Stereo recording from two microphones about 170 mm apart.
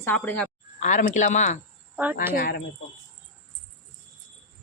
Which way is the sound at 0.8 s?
45° left (ahead or behind).